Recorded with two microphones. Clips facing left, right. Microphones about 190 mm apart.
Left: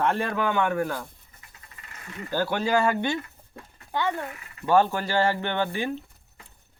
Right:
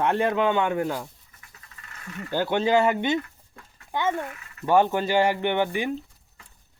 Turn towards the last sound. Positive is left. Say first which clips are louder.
# right 3 dB
turn(degrees=-15)  # may be behind; listen again after turning